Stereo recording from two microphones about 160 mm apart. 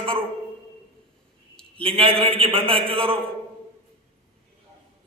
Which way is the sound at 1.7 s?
35° right (ahead or behind).